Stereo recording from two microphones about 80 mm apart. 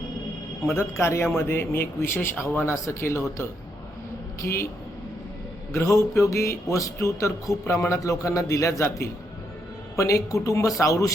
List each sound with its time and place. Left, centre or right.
0.7 s speech: left
2.8 s speech: left
4.4 s speech: left
5.7 s speech: left
9.9 s speech: left